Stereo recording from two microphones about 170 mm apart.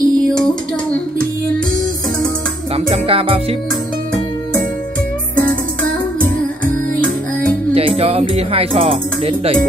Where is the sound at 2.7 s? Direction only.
35° right (ahead or behind).